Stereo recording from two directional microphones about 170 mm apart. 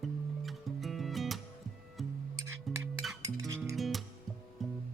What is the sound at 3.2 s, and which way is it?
Music, 20° right (ahead or behind).